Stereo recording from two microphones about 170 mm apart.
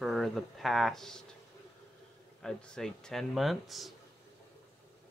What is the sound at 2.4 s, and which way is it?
Speech, 5° left (ahead or behind).